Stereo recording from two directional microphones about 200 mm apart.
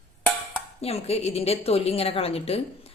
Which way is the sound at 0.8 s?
30° left (ahead or behind).